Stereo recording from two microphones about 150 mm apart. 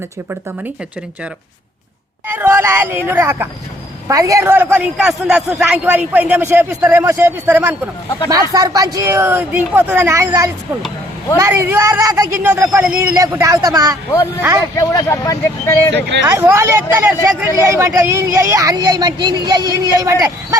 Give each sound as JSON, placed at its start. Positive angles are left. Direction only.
{"t": 2.2, "sound": "a man's voice", "side_deg": -15}
{"t": 14.8, "sound": "speech", "side_deg": 20}
{"t": 16.2, "sound": "speech", "side_deg": -20}